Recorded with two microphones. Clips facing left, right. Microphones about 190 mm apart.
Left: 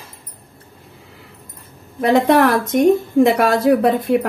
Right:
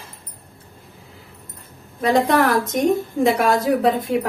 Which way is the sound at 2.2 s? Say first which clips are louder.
Left 4 dB; 60° left (ahead or behind).